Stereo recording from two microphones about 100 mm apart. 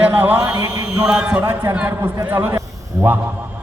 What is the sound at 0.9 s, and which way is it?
A man's voice, 10° right (ahead or behind).